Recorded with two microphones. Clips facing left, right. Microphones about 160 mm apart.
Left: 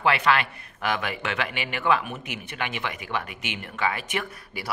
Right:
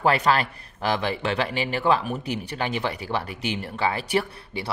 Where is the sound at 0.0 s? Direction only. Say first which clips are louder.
Right 2 dB; 40° right (ahead or behind).